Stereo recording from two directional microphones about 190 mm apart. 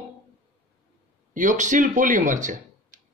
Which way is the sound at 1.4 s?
40° right (ahead or behind).